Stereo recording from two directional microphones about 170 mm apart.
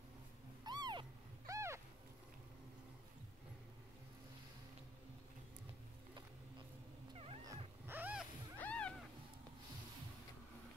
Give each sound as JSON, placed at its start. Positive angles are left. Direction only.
{"t": 0.7, "sound": "cat", "side_deg": -25}
{"t": 1.5, "sound": "a sound", "side_deg": -15}
{"t": 7.4, "sound": "cat", "side_deg": -10}
{"t": 8.5, "sound": "cat", "side_deg": 10}